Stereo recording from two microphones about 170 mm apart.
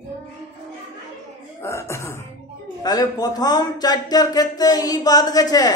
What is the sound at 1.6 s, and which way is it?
Speech, 15° left (ahead or behind).